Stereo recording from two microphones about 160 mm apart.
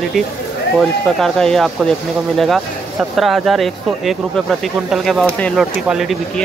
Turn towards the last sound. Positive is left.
turn(degrees=0)  # may be behind; listen again after turning